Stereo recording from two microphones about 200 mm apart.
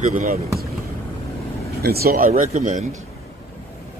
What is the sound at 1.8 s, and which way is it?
Speech, 50° right (ahead or behind).